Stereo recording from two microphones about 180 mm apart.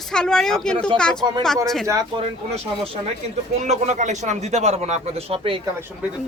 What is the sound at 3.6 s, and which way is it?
Speech, 40° right (ahead or behind).